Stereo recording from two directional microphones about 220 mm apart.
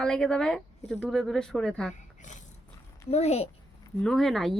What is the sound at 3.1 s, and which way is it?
Speech, 30° left (ahead or behind).